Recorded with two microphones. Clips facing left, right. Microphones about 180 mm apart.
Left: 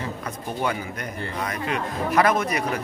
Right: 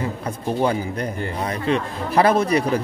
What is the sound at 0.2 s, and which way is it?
Speech, 30° right (ahead or behind).